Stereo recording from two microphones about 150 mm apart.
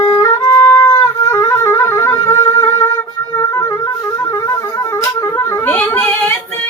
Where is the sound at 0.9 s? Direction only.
20° left (ahead or behind).